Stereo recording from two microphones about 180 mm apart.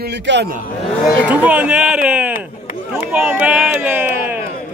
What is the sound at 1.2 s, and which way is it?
Speech, 5° right (ahead or behind).